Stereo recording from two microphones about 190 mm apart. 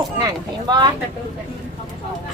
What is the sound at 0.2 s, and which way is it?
Speech, 20° right (ahead or behind).